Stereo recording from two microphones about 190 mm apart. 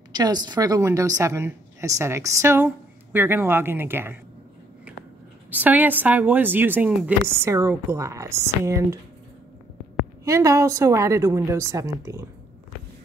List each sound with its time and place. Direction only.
0.1 s a woman's voice: 20° right (ahead or behind)
5.5 s a woman's voice: 10° right (ahead or behind)
10.2 s a woman's voice: 15° right (ahead or behind)